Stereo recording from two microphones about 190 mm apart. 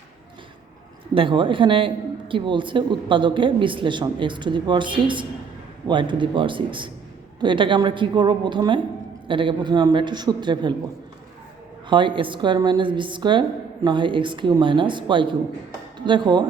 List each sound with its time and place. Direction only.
1.1 s speech: 25° right (ahead or behind)
11.9 s speech: 25° right (ahead or behind)